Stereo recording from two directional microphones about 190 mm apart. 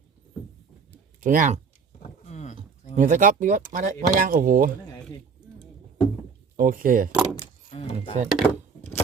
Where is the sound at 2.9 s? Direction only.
45° right (ahead or behind).